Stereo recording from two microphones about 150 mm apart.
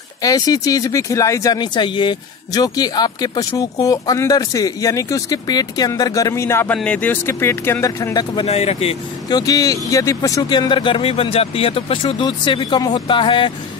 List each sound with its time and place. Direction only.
0.2 s speech: 25° left (ahead or behind)
8.5 s speech: 45° left (ahead or behind)
9.3 s speech: 25° left (ahead or behind)